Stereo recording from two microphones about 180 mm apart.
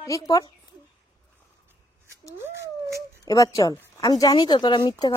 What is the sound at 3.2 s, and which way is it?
Speech, 20° left (ahead or behind).